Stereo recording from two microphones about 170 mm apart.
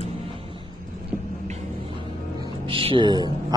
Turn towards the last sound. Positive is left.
turn(degrees=-25)  # may be behind; listen again after turning